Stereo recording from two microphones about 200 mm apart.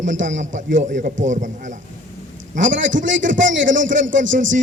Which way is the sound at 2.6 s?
70° right (ahead or behind).